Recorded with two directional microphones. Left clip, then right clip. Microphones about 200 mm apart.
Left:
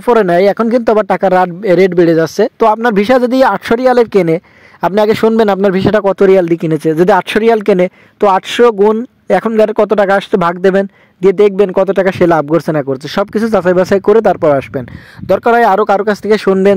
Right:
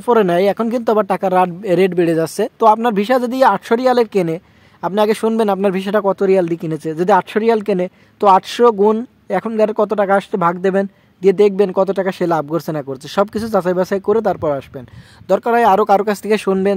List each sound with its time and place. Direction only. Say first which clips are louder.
0.0 s speech: left 5 dB; 30° left (ahead or behind)